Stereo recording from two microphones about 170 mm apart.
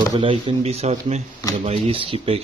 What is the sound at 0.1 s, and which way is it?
Speech, 30° right (ahead or behind).